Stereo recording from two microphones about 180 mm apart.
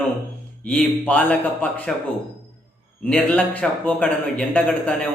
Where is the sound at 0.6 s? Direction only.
5° left (ahead or behind).